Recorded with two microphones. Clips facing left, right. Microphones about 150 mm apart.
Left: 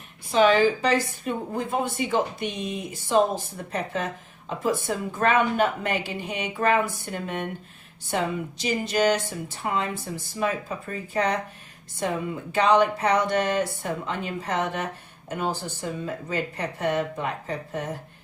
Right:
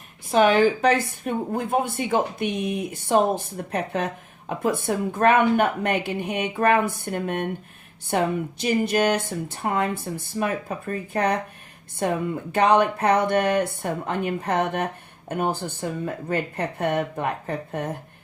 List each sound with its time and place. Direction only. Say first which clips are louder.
0.3 s a woman's voice: right 1 dB; 55° right (ahead or behind)